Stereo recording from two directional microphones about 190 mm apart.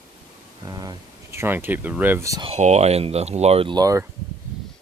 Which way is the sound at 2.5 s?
35° right (ahead or behind).